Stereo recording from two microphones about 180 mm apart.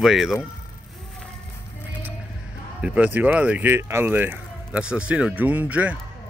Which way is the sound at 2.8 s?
10° right (ahead or behind).